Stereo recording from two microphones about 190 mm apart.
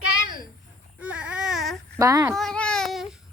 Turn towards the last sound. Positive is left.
turn(degrees=0)  # may be behind; listen again after turning